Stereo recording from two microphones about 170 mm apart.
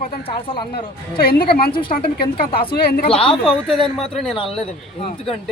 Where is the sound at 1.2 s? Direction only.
65° left (ahead or behind).